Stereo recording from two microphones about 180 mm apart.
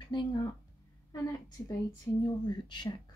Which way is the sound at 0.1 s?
25° left (ahead or behind).